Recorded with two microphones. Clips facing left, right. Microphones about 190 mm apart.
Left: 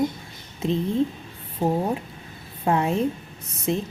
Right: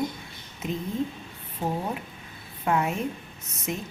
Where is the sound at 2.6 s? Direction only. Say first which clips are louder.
Left 4 dB; 30° left (ahead or behind).